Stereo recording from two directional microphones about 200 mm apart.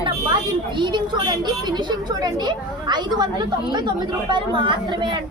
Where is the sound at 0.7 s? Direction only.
20° right (ahead or behind).